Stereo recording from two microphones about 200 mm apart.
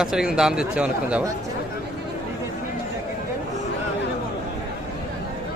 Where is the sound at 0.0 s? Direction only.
5° right (ahead or behind).